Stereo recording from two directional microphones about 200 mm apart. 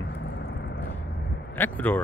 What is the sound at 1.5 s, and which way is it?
Speech, 10° left (ahead or behind).